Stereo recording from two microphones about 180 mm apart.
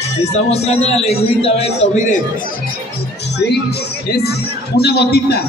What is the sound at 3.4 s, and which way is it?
Speech, 60° left (ahead or behind).